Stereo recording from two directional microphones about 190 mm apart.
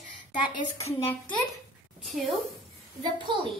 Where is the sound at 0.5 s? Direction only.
35° left (ahead or behind).